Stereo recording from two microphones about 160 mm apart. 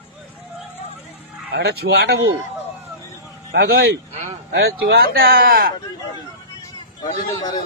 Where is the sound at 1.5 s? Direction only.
90° right.